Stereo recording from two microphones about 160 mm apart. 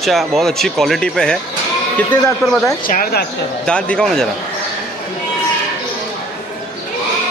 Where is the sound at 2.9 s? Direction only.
70° left (ahead or behind).